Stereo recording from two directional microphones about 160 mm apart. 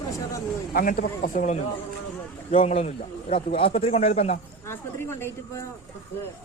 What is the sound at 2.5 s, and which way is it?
A man's voice, 40° left (ahead or behind).